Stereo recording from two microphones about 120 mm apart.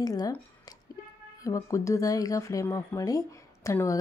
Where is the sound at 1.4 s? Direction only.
25° left (ahead or behind).